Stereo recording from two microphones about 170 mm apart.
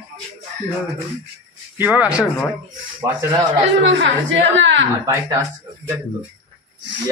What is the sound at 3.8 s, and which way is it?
A woman's voice, 90° right.